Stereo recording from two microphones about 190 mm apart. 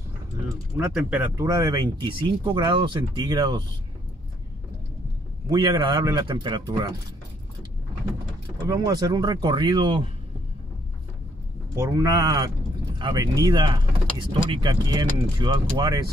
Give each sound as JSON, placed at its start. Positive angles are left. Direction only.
{"t": 0.7, "sound": "speech", "side_deg": -5}
{"t": 1.3, "sound": "speech", "side_deg": -15}
{"t": 5.5, "sound": "speech", "side_deg": -25}
{"t": 8.6, "sound": "speech", "side_deg": -15}
{"t": 11.7, "sound": "speech", "side_deg": -15}